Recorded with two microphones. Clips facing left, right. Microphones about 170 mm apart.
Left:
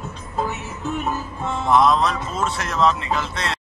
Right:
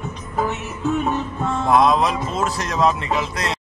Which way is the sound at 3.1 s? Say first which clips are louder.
Right 2 dB; centre (ahead or behind).